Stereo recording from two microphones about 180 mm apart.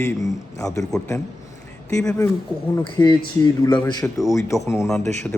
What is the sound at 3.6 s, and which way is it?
Speech, 20° left (ahead or behind).